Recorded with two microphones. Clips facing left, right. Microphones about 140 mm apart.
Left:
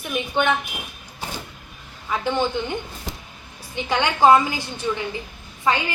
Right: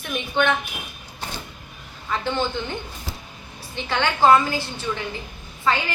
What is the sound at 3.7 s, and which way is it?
A woman's voice, 15° left (ahead or behind).